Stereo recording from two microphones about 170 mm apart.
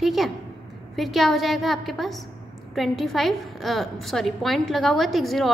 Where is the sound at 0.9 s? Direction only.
Centre (ahead or behind).